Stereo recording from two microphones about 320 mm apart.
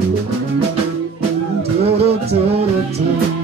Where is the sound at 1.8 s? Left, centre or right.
Centre.